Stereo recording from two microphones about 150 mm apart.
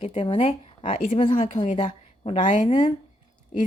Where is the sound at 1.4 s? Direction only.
60° left (ahead or behind).